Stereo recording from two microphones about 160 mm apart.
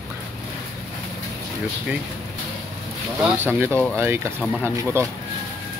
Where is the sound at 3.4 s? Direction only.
10° right (ahead or behind).